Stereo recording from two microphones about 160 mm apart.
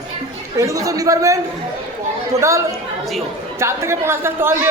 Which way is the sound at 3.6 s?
15° right (ahead or behind).